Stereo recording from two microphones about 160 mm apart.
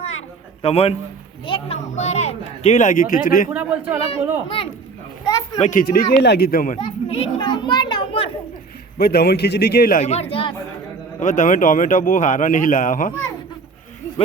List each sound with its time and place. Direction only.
0.0 s a sound: 40° left (ahead or behind)
1.5 s speech: 35° left (ahead or behind); by 3.5 s 55° left (ahead or behind)
3.5 s a man's voice: 10° right (ahead or behind)
4.1 s a child's voice: 35° left (ahead or behind)
5.2 s a sound: 20° left (ahead or behind)
5.5 s speech: 45° left (ahead or behind)
5.8 s a man's voice: 70° left (ahead or behind)
6.7 s children playing: 35° left (ahead or behind)
9.0 s a man's voice: 75° left (ahead or behind)
10.0 s a child's voice: 40° left (ahead or behind)
11.2 s a man's voice: 50° left (ahead or behind)